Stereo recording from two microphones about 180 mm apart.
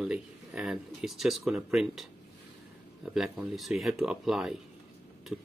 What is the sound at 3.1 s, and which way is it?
Speech, 5° right (ahead or behind).